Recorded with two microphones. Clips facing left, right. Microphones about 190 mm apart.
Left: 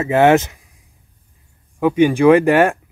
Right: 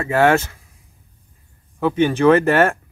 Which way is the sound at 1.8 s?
15° left (ahead or behind).